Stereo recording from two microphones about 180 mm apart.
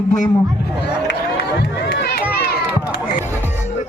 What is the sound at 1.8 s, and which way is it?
Speech, 70° left (ahead or behind).